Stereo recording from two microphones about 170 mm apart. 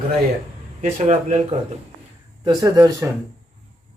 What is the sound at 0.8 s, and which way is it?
Speech, 45° right (ahead or behind).